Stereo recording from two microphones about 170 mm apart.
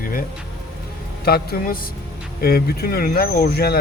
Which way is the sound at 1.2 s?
65° left (ahead or behind).